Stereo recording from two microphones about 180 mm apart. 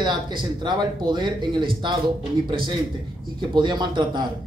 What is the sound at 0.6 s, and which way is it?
Speech, 25° right (ahead or behind).